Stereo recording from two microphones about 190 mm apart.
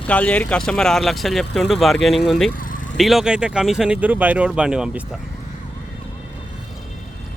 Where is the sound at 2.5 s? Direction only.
45° left (ahead or behind).